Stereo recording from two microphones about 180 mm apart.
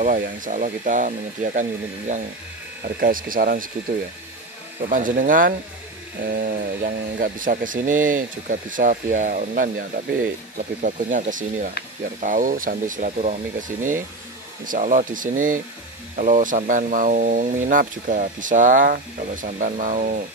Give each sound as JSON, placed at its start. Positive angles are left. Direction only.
{"t": 0.0, "sound": "speech", "side_deg": -45}
{"t": 4.8, "sound": "speech", "side_deg": -50}